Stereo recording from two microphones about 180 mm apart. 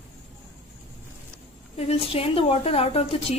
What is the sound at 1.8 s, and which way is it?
A woman's voice, 35° left (ahead or behind).